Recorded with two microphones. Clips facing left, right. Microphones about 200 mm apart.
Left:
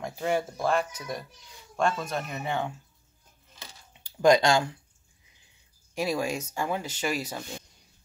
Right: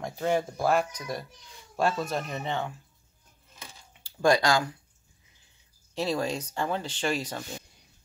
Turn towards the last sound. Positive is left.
turn(degrees=10)  # may be behind; listen again after turning